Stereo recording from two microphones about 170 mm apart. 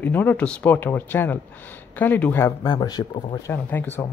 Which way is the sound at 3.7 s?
10° left (ahead or behind).